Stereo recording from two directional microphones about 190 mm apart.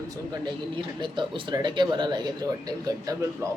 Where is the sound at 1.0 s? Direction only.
25° right (ahead or behind).